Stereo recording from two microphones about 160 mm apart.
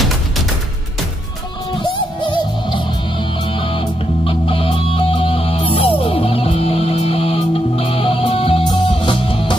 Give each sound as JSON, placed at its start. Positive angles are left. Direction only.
{"t": 1.8, "sound": "music", "side_deg": 30}